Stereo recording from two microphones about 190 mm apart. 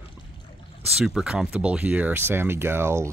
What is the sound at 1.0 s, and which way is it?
Speech, 5° right (ahead or behind).